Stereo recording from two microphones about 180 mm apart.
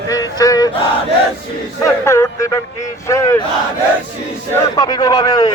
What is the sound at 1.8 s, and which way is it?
Speech, 15° left (ahead or behind).